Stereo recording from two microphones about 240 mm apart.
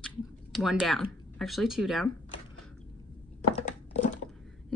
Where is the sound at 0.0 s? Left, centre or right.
Centre.